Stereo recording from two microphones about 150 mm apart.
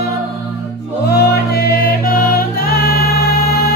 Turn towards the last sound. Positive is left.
turn(degrees=90)